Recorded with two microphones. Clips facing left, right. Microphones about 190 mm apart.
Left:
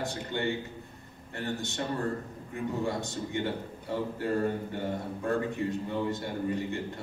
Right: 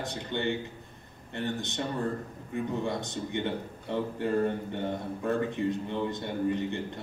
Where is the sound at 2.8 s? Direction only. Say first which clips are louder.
Even; 20° right (ahead or behind).